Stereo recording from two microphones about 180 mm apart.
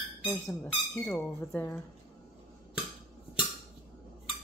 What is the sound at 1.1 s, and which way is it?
Speech, 10° left (ahead or behind).